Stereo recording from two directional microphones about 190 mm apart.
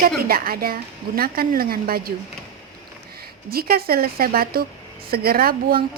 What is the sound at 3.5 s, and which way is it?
A woman's voice, 55° right (ahead or behind).